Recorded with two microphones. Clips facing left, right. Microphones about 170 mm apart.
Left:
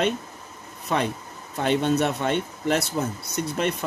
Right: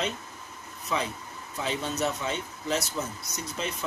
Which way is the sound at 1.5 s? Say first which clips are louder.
Left 9 dB; 65° left (ahead or behind).